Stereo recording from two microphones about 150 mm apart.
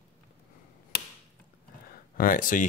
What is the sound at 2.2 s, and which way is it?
Speech, 65° left (ahead or behind).